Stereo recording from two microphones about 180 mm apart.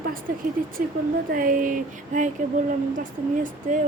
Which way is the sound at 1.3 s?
50° right (ahead or behind).